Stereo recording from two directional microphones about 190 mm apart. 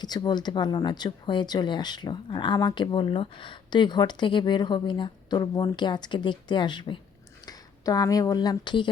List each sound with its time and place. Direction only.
0.0 s speech: 20° left (ahead or behind)